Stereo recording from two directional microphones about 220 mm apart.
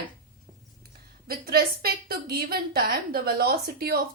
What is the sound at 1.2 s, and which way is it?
A woman's voice, 45° right (ahead or behind).